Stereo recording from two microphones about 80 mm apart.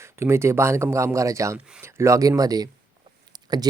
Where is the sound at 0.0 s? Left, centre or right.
Right.